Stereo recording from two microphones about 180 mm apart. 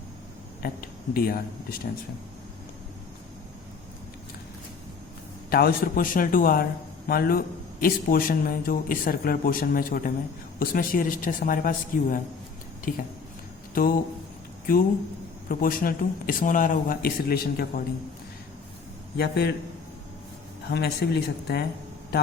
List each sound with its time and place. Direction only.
0.6 s speech: 55° left (ahead or behind)
5.5 s a man's voice: 55° left (ahead or behind)
15.4 s a man's voice: 50° left (ahead or behind)
19.1 s speech: 60° left (ahead or behind)
20.7 s speech: 65° left (ahead or behind)